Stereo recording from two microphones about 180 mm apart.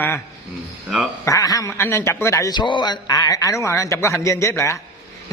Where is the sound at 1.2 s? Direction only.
20° left (ahead or behind).